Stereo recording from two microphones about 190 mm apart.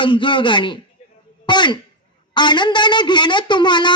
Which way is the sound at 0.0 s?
25° left (ahead or behind).